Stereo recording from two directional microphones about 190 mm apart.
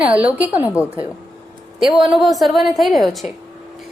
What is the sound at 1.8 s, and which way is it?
A woman's voice, centre (ahead or behind).